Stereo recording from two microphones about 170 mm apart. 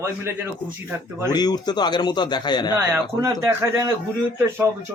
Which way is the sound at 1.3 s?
25° left (ahead or behind).